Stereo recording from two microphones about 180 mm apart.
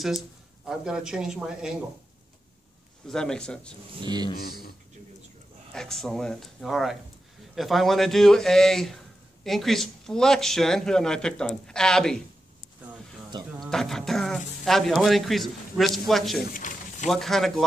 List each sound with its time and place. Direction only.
0.7 s a man's voice: 5° right (ahead or behind)
3.1 s a man's voice: 5° left (ahead or behind)
3.9 s speech: 25° right (ahead or behind)
5.7 s a man's voice: centre (ahead or behind)
13.6 s a man's voice: centre (ahead or behind)
16.5 s a sound: 45° left (ahead or behind)
17.1 s a man's voice: centre (ahead or behind)